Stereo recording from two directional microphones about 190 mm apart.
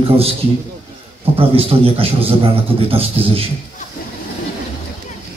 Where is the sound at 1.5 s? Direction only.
30° right (ahead or behind).